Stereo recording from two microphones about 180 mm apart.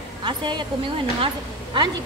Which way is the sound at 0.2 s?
25° right (ahead or behind).